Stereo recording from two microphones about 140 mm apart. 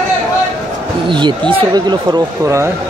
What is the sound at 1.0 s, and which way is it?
Speech, 35° right (ahead or behind).